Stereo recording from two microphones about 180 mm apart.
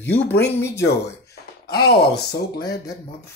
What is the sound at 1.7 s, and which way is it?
Speech, 60° left (ahead or behind).